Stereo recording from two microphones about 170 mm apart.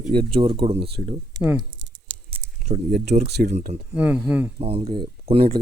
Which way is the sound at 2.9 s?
65° right (ahead or behind).